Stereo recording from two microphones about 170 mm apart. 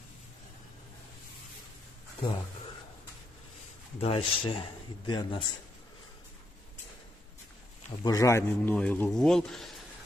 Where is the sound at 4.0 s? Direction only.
35° left (ahead or behind).